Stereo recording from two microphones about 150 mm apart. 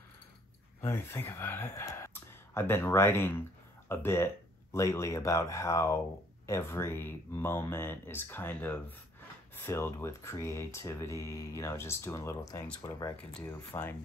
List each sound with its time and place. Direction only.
0.7 s speech: 15° left (ahead or behind)
13.3 s speech: 10° left (ahead or behind)